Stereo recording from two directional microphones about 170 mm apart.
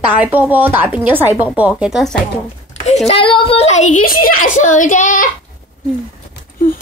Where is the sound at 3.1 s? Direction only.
30° left (ahead or behind); by 5.3 s 50° left (ahead or behind).